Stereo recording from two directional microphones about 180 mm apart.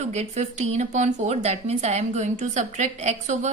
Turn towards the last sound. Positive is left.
turn(degrees=-40)  # may be behind; listen again after turning